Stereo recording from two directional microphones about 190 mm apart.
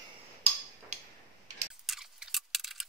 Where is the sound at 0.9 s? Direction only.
35° right (ahead or behind).